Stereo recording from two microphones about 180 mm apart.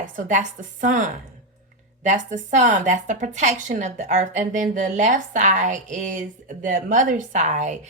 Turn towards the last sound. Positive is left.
turn(degrees=-40)  # may be behind; listen again after turning